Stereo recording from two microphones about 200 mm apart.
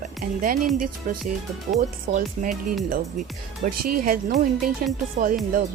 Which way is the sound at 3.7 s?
45° right (ahead or behind).